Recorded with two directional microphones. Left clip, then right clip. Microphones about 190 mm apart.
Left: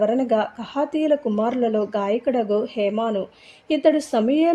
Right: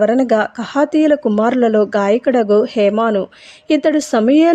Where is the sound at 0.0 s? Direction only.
25° right (ahead or behind).